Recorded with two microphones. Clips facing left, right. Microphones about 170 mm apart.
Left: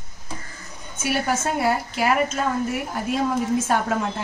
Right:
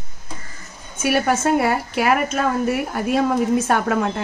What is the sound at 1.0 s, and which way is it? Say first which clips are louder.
A woman's voice: right 5 dB; 65° right (ahead or behind).